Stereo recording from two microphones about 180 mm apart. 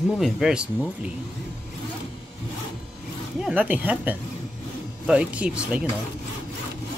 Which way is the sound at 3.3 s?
5° right (ahead or behind).